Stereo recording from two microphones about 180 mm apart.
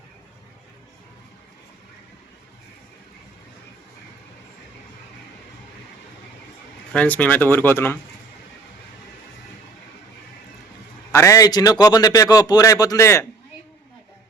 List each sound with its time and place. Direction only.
6.9 s speech: 10° left (ahead or behind)
11.1 s a man's voice: 15° left (ahead or behind)